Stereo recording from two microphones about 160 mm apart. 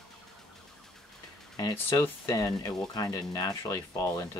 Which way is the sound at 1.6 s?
25° left (ahead or behind).